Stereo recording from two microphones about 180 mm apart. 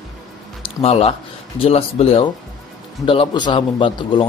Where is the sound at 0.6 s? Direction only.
30° left (ahead or behind).